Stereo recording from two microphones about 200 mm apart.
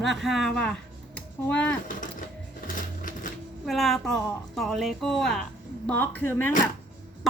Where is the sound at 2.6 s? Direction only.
45° left (ahead or behind).